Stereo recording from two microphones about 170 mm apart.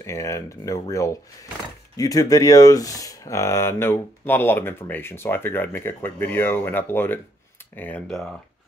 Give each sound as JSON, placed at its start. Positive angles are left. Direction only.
{"t": 0.0, "sound": "speech", "side_deg": 15}